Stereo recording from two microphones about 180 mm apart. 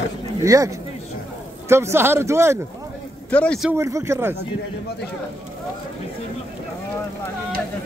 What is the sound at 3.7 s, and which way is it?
Speech, 15° right (ahead or behind).